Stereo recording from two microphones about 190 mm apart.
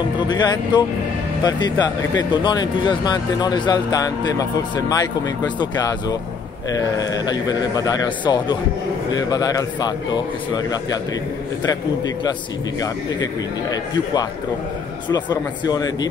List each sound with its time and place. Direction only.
0.3 s speech: 20° left (ahead or behind)
12.8 s speech: 20° left (ahead or behind)